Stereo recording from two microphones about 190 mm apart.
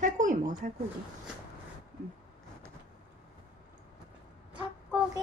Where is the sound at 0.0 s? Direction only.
40° right (ahead or behind).